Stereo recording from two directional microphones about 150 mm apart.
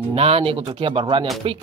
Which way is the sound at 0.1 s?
40° right (ahead or behind).